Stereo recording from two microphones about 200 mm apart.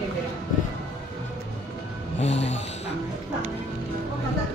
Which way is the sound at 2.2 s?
35° left (ahead or behind).